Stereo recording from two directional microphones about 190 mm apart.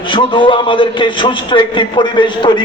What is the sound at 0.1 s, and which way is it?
A man's voice, 25° left (ahead or behind).